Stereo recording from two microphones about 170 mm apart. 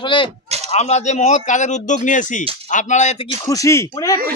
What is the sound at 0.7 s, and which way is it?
Speech, 40° left (ahead or behind).